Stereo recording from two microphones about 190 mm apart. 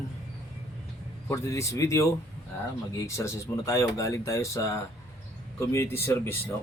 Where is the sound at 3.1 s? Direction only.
15° left (ahead or behind).